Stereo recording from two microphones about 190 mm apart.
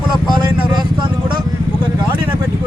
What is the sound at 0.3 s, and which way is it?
Vehicle, 25° right (ahead or behind).